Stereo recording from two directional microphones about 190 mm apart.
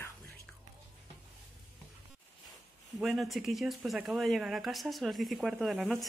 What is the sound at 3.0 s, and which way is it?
Speech, centre (ahead or behind).